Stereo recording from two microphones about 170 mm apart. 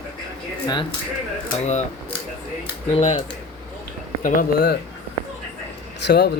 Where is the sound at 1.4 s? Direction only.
45° left (ahead or behind).